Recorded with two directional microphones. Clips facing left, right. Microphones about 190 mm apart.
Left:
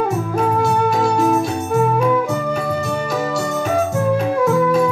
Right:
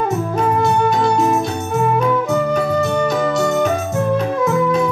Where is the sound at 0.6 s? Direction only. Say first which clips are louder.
Right 2 dB; 5° left (ahead or behind).